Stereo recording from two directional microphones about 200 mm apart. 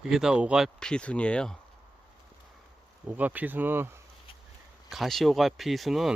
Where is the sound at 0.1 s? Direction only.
5° right (ahead or behind).